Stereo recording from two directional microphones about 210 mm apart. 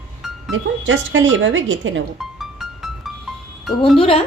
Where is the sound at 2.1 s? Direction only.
Centre (ahead or behind).